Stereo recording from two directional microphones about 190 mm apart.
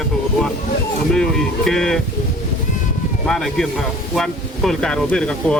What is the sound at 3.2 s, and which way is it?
Speech, centre (ahead or behind).